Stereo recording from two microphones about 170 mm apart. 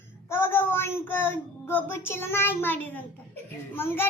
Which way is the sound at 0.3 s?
15° left (ahead or behind).